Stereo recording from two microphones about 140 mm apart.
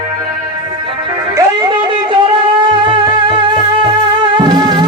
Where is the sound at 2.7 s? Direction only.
35° right (ahead or behind).